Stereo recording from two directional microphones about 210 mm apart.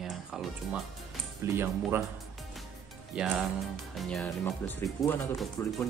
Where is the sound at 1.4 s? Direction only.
15° right (ahead or behind).